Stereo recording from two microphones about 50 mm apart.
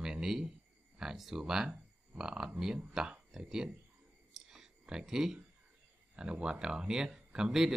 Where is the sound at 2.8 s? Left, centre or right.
Centre.